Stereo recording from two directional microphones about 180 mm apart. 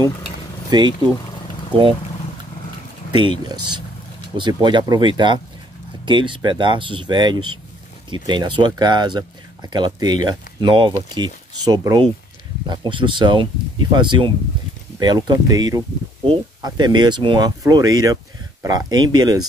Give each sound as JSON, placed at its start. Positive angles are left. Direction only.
{"t": 0.7, "sound": "speech", "side_deg": -25}
{"t": 3.1, "sound": "speech", "side_deg": -25}